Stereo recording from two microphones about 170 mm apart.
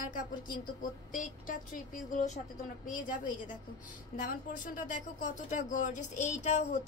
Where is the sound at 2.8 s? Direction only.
50° left (ahead or behind).